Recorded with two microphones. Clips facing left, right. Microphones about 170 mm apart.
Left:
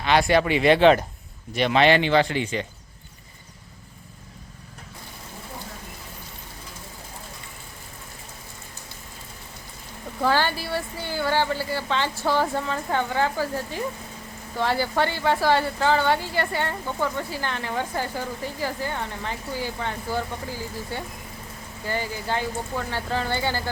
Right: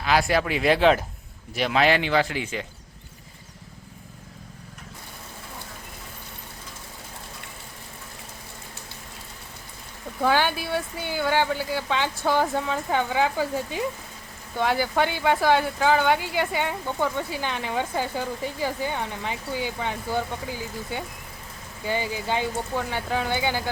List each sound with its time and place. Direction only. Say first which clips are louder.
0.0 s speech: left 2 dB; centre (ahead or behind)
10.2 s speech: even; 15° right (ahead or behind)
14.6 s speech: even; 15° right (ahead or behind)